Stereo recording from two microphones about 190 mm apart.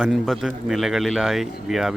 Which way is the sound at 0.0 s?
Centre (ahead or behind).